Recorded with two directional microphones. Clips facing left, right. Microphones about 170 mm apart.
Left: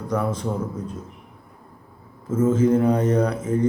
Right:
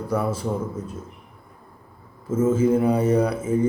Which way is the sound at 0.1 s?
5° right (ahead or behind).